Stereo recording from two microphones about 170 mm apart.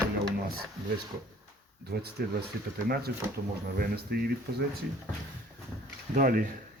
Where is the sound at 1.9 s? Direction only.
70° right (ahead or behind).